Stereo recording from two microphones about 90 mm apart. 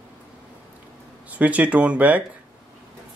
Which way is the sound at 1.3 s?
15° right (ahead or behind).